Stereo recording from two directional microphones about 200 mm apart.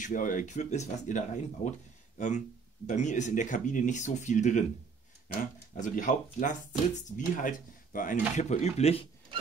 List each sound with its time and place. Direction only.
0.0 s speech: 40° left (ahead or behind)